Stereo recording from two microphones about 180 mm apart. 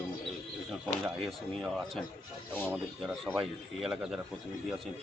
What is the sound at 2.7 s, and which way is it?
A man's voice, 5° right (ahead or behind).